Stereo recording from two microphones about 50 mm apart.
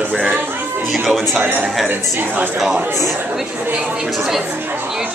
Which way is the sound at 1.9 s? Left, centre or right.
Right.